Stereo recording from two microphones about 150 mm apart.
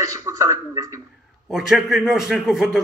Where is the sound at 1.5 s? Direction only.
Centre (ahead or behind).